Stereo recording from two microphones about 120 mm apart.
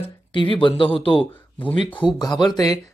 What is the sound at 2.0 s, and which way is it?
Speech, 35° left (ahead or behind).